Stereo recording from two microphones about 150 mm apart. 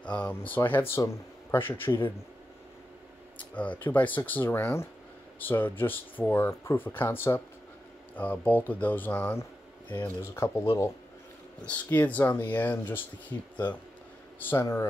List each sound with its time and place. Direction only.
0.0 s speech: 10° left (ahead or behind)
3.5 s speech: 10° left (ahead or behind)
14.4 s speech: 15° left (ahead or behind)